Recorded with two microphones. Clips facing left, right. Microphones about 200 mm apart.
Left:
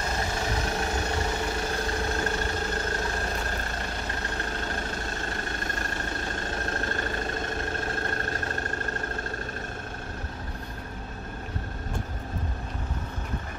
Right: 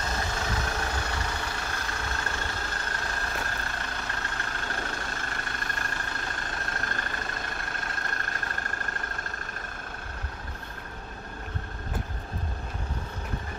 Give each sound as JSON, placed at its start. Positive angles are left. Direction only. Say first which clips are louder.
{"t": 0.5, "sound": "vehicle", "louder": "left 3 dB", "side_deg": 25}
{"t": 7.4, "sound": "vehicle", "louder": "left 7 dB", "side_deg": 25}